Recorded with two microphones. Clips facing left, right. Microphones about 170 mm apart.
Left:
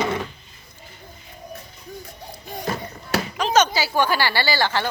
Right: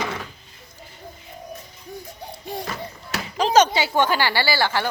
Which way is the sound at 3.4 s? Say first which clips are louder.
Right 3 dB; 30° right (ahead or behind).